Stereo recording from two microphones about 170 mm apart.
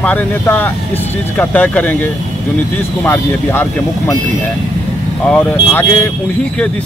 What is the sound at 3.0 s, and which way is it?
Speech, 10° left (ahead or behind).